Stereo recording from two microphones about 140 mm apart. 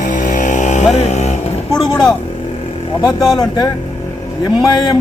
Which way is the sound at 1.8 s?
25° left (ahead or behind).